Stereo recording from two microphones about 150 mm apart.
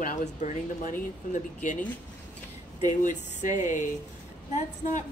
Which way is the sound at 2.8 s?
55° left (ahead or behind).